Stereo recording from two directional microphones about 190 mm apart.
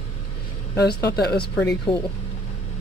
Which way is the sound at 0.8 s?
55° left (ahead or behind).